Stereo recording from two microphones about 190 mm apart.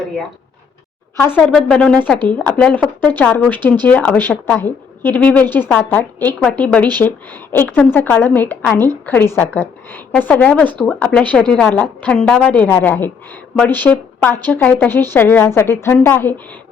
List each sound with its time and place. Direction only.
1.1 s a woman's voice: 10° left (ahead or behind)